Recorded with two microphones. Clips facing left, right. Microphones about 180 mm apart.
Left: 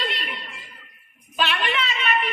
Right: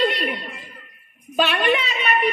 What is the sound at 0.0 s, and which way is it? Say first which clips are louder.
Chuckle: right 9 dB; 45° right (ahead or behind).